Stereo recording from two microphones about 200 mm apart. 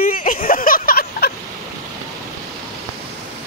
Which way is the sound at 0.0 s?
45° left (ahead or behind).